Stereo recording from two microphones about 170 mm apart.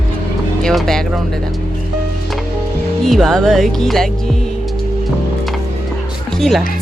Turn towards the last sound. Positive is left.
turn(degrees=0)  # may be behind; listen again after turning